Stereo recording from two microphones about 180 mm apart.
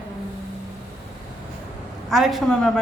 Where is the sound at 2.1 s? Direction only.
Centre (ahead or behind).